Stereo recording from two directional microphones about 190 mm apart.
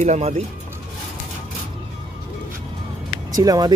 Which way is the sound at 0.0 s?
40° right (ahead or behind).